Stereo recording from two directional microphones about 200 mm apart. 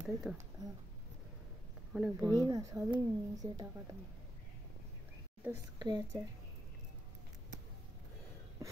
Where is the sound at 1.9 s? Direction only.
5° right (ahead or behind).